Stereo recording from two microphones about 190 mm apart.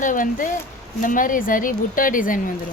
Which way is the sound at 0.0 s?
45° left (ahead or behind).